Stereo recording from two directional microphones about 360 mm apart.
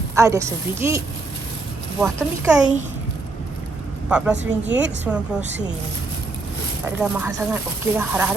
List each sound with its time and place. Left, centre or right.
0.2 s a woman's voice: centre
4.1 s speech: centre
6.8 s speech: centre